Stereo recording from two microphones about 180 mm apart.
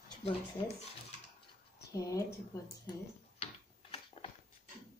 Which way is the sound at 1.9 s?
20° left (ahead or behind).